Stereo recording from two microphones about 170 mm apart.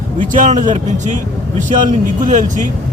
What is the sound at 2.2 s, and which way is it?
Speech, 50° right (ahead or behind).